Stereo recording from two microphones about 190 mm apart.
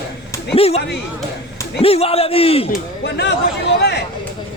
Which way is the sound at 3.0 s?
60° left (ahead or behind).